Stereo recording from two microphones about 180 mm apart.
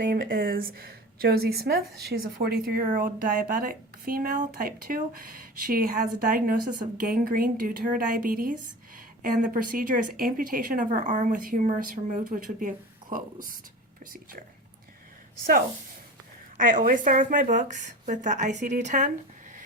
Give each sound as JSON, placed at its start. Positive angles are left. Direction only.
{"t": 0.0, "sound": "speech", "side_deg": -50}
{"t": 16.6, "sound": "speech", "side_deg": -50}